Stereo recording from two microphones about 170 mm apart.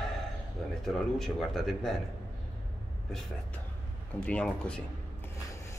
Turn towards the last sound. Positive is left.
turn(degrees=5)  # may be behind; listen again after turning